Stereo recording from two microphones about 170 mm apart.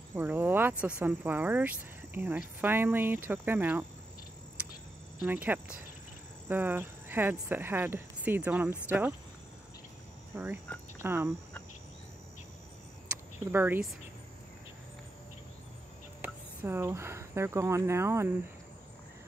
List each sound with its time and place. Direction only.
0.1 s speech: 10° right (ahead or behind)
5.2 s speech: 10° right (ahead or behind)
10.3 s speech: 10° right (ahead or behind)
13.1 s a sound: 10° right (ahead or behind)
16.2 s speech: 15° right (ahead or behind)